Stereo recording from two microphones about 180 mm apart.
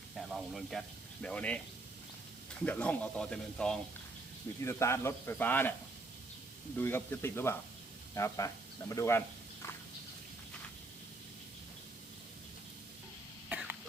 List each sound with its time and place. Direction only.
0.2 s speech: centre (ahead or behind)
4.6 s speech: 15° left (ahead or behind)
6.7 s speech: 10° left (ahead or behind)
13.5 s cough: 10° right (ahead or behind)